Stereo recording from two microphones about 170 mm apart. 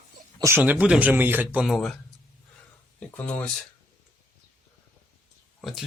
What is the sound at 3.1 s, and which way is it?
Speech, 10° left (ahead or behind).